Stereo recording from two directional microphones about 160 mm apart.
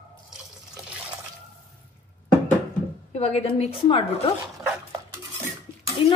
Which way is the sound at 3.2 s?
40° left (ahead or behind).